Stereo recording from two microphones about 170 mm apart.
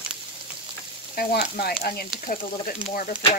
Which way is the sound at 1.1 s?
60° left (ahead or behind).